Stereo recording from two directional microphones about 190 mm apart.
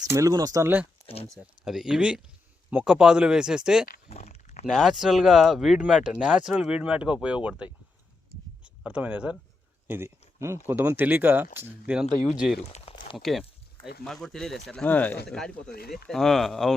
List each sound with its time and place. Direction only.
0.0 s speech: 15° right (ahead or behind)
1.0 s speech: 30° left (ahead or behind)
1.3 s speech: 5° right (ahead or behind)
4.1 s a sound: 35° left (ahead or behind)
4.6 s speech: centre (ahead or behind)
12.6 s a sound: 30° left (ahead or behind)
13.1 s speech: centre (ahead or behind)
15.7 s speech: 55° left (ahead or behind)
16.0 s speech: centre (ahead or behind)